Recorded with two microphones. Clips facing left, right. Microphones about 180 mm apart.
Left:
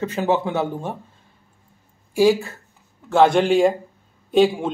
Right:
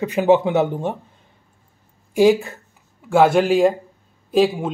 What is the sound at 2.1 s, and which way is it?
Speech, 20° right (ahead or behind).